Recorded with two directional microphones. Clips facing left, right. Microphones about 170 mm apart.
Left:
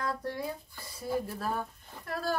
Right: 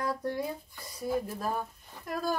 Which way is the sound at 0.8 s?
15° right (ahead or behind).